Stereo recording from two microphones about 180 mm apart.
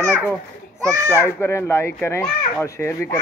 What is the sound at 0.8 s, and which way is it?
Speech, 20° right (ahead or behind).